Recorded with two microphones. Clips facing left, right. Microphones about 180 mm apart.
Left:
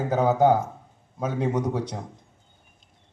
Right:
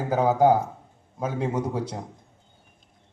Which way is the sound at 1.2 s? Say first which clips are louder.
Left 1 dB; 30° right (ahead or behind).